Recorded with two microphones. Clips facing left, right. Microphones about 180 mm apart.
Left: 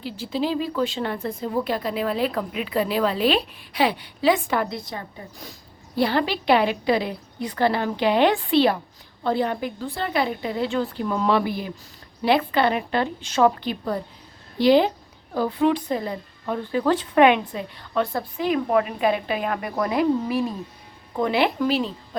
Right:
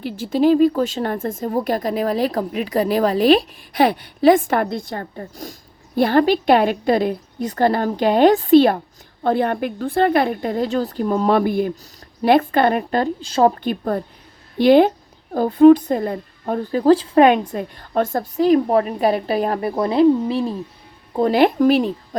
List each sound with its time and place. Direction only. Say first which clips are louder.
0.0 s speech: right 9 dB; 50° right (ahead or behind)
13.6 s a woman's voice: right 5 dB; 50° right (ahead or behind); by 20.4 s 30° right (ahead or behind)
21.2 s speech: right 6 dB; 40° right (ahead or behind)